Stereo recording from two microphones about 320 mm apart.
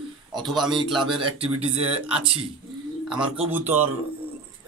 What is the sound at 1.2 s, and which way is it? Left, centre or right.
Speech, centre.